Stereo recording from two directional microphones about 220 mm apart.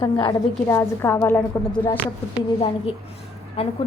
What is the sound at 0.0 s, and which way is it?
A woman's voice, 20° left (ahead or behind).